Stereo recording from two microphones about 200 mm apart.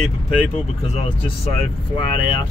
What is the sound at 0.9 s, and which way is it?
Speech, 30° left (ahead or behind).